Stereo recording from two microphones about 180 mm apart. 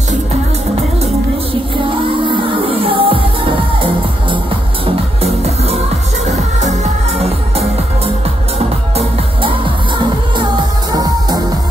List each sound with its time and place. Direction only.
2.7 s music: 30° right (ahead or behind)
4.8 s music: 35° right (ahead or behind)
8.5 s music: 30° right (ahead or behind)
10.9 s music: 20° right (ahead or behind)